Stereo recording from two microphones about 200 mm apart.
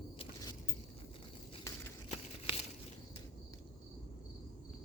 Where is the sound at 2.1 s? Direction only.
30° left (ahead or behind).